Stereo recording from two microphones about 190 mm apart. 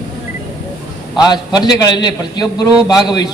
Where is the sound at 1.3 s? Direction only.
20° left (ahead or behind).